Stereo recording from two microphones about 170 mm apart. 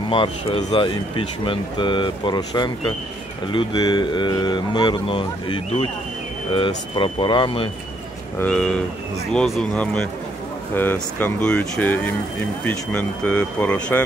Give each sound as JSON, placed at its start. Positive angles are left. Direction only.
{"t": 0.1, "sound": "speech", "side_deg": 30}
{"t": 8.4, "sound": "speech", "side_deg": 5}